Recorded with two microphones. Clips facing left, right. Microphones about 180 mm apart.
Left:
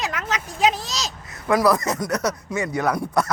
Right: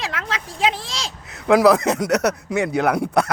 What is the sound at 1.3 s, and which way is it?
Speech, 70° right (ahead or behind).